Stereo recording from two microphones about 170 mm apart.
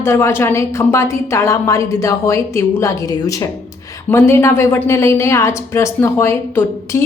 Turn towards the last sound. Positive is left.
turn(degrees=15)  # may be behind; listen again after turning